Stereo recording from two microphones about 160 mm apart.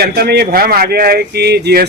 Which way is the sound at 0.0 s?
85° right.